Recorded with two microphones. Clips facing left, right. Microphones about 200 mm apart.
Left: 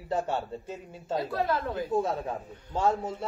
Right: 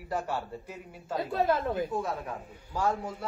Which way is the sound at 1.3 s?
25° right (ahead or behind).